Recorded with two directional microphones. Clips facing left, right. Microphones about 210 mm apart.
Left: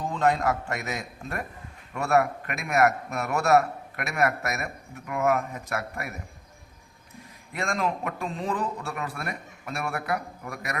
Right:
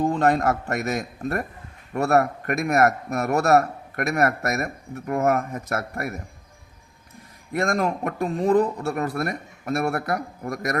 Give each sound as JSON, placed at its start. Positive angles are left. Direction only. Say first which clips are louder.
{"t": 0.0, "sound": "a man's voice", "louder": "right 4 dB", "side_deg": -50}
{"t": 7.5, "sound": "a man's voice", "louder": "right 5 dB", "side_deg": -45}